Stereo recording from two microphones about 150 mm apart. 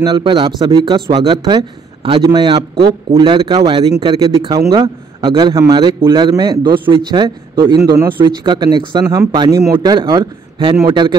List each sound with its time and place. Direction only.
0.0 s a man's voice: 30° right (ahead or behind)